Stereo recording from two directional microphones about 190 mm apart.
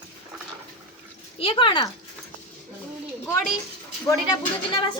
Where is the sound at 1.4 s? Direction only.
30° left (ahead or behind).